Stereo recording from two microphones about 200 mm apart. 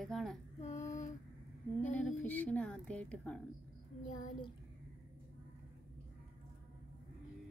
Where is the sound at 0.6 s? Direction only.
35° left (ahead or behind).